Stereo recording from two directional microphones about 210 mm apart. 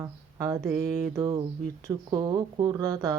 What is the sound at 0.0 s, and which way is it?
Mantra, 15° right (ahead or behind).